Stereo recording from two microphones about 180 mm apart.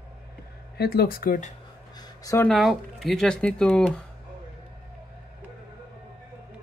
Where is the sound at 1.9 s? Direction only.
20° left (ahead or behind).